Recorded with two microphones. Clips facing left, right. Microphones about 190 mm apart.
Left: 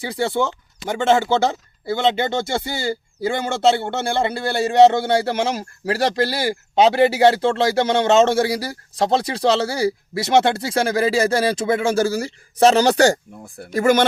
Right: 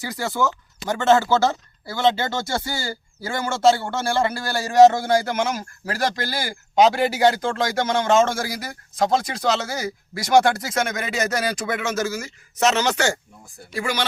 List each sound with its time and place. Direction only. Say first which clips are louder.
0.1 s speech: left 3 dB; 30° left (ahead or behind)
1.0 s speech: even; 15° left (ahead or behind); by 13.1 s 35° left (ahead or behind)
13.7 s speech: left 10 dB; 50° left (ahead or behind)